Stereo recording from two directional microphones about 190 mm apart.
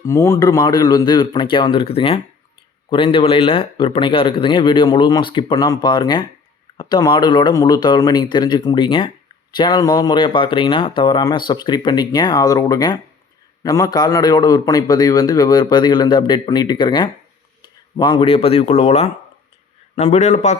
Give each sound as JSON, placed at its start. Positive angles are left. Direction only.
{"t": 0.0, "sound": "a man's voice", "side_deg": 15}